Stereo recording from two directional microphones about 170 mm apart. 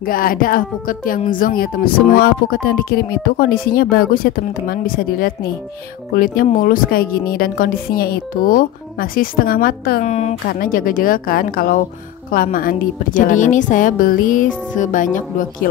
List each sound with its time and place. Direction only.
0.1 s speech: 55° left (ahead or behind)
10.0 s a woman's voice: 40° left (ahead or behind)
10.6 s a woman's voice: 55° left (ahead or behind)